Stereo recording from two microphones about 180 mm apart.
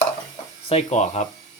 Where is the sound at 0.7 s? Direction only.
35° left (ahead or behind).